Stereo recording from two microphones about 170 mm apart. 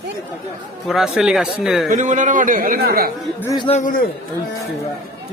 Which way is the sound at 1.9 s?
45° right (ahead or behind).